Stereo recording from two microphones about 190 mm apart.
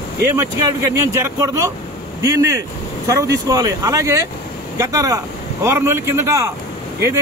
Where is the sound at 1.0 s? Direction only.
15° right (ahead or behind).